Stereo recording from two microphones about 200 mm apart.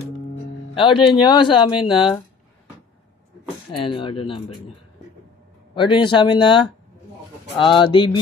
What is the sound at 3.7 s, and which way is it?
Speech, 25° left (ahead or behind).